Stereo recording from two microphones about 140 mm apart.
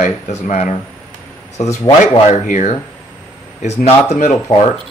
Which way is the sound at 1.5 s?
20° left (ahead or behind).